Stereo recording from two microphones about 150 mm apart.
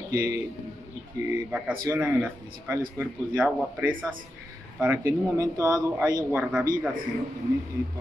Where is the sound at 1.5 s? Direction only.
5° right (ahead or behind).